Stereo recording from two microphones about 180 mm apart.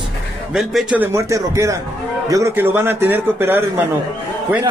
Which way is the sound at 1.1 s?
15° right (ahead or behind).